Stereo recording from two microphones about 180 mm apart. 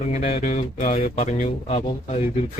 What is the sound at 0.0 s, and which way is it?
Speech, 35° left (ahead or behind).